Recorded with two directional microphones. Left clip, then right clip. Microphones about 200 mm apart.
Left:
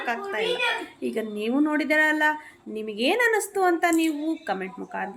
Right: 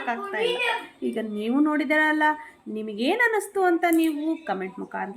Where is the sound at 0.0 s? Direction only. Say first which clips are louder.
Right 1 dB; 10° left (ahead or behind).